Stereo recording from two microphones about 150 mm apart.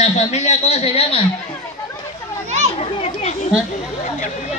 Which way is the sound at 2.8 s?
45° left (ahead or behind).